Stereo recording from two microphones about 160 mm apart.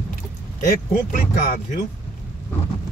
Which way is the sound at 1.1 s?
55° left (ahead or behind).